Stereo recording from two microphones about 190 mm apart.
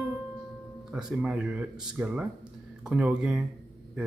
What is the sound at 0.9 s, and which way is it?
Speech, 5° right (ahead or behind).